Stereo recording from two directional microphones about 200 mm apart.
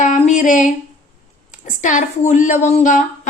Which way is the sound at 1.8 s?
40° left (ahead or behind).